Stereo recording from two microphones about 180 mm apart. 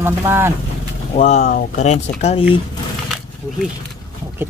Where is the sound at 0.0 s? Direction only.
15° right (ahead or behind).